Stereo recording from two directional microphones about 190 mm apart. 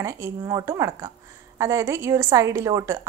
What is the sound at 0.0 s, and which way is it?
Speech, 15° right (ahead or behind).